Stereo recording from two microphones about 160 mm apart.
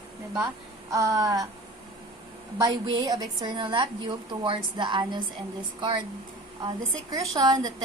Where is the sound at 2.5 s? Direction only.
25° right (ahead or behind).